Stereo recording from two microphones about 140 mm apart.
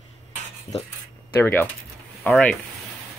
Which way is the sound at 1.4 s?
15° left (ahead or behind).